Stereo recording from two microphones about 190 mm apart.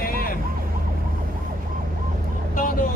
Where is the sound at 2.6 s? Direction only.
45° left (ahead or behind).